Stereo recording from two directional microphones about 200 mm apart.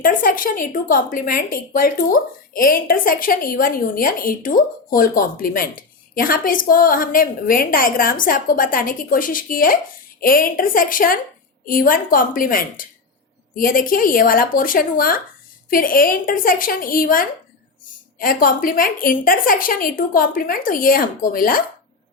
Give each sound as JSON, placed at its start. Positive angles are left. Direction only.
{"t": 0.0, "sound": "a woman's voice", "side_deg": 45}